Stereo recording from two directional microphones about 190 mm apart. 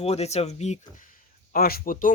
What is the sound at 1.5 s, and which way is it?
Speech, 50° left (ahead or behind).